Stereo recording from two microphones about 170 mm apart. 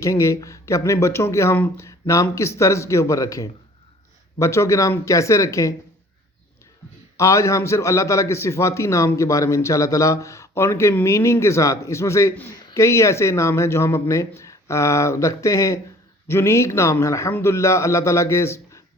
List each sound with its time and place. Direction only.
0.0 s a man's voice: 20° left (ahead or behind)
7.2 s a man's voice: 15° left (ahead or behind)